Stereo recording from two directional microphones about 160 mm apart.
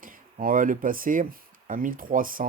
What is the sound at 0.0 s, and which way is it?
Speech, 60° right (ahead or behind).